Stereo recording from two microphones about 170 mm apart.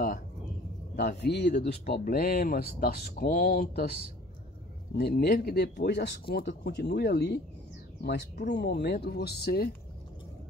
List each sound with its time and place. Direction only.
0.9 s speech: 70° left (ahead or behind)
4.9 s speech: 65° left (ahead or behind)